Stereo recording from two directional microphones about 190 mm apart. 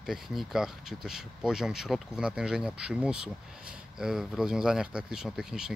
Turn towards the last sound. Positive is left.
turn(degrees=0)  # may be behind; listen again after turning